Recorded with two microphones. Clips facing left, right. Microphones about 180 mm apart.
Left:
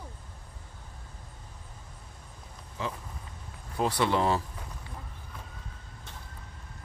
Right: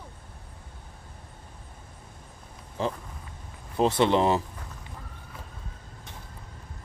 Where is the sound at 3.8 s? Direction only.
25° right (ahead or behind).